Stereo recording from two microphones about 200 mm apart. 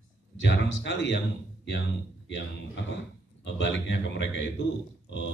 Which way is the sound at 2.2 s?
65° left (ahead or behind).